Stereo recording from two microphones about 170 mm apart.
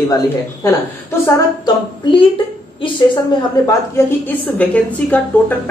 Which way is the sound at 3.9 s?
10° left (ahead or behind).